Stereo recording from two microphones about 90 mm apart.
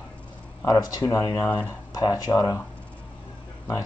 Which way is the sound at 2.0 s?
45° left (ahead or behind).